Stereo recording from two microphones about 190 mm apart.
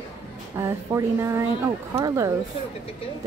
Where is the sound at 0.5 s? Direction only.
15° right (ahead or behind).